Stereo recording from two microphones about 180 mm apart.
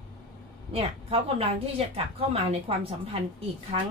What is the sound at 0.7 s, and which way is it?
Speech, 30° right (ahead or behind).